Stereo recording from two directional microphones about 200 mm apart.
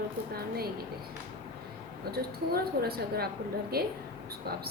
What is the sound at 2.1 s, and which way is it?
A woman's voice, 50° right (ahead or behind).